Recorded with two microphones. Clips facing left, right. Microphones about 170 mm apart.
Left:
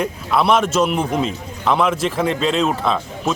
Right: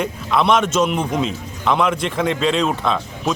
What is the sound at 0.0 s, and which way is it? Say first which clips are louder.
A man's voice: even; 5° left (ahead or behind).